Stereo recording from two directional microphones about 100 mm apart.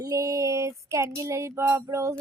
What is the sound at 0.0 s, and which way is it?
Child singing, 35° right (ahead or behind).